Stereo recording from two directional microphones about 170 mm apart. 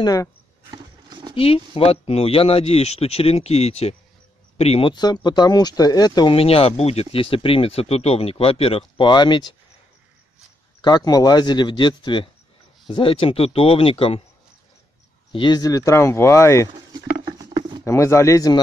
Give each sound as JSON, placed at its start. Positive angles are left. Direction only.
{"t": 0.0, "sound": "speech", "side_deg": 20}
{"t": 1.3, "sound": "speech", "side_deg": 35}
{"t": 10.8, "sound": "speech", "side_deg": 25}
{"t": 15.3, "sound": "speech", "side_deg": 25}
{"t": 17.8, "sound": "speech", "side_deg": 15}